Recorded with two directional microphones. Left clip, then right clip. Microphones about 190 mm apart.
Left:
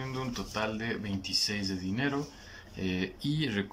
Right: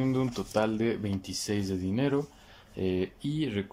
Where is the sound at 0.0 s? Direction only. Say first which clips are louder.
Right 6 dB; 25° right (ahead or behind).